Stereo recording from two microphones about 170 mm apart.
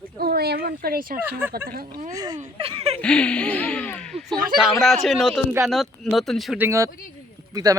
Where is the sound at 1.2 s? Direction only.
10° right (ahead or behind).